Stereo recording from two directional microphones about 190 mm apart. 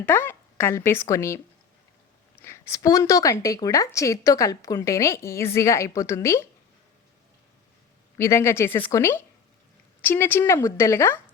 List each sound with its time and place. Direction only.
0.0 s a woman's voice: 10° left (ahead or behind)
2.4 s a woman's voice: 15° left (ahead or behind)
8.2 s a woman's voice: 15° left (ahead or behind)